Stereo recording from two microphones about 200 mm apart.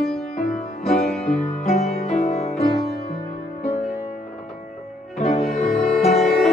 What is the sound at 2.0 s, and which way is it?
Music, 30° left (ahead or behind).